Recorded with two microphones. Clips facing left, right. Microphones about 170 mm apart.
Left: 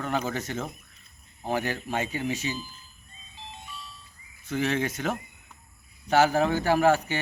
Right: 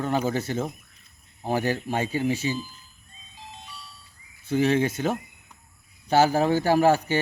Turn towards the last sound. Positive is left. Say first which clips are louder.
# right 2 dB
turn(degrees=-35)  # may be behind; listen again after turning